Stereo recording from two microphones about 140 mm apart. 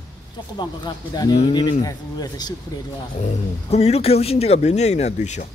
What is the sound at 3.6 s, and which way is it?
Speech, 50° left (ahead or behind).